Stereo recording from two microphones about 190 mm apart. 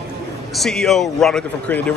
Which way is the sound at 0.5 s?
Centre (ahead or behind).